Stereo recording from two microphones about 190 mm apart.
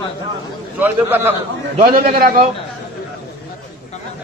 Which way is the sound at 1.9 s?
50° right (ahead or behind).